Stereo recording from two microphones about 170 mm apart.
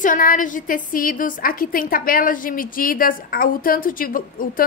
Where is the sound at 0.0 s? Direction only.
55° left (ahead or behind).